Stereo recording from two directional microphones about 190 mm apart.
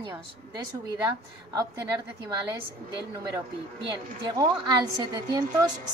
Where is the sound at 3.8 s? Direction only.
20° right (ahead or behind).